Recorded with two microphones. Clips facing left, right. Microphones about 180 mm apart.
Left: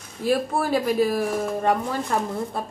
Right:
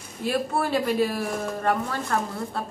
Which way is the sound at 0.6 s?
10° left (ahead or behind).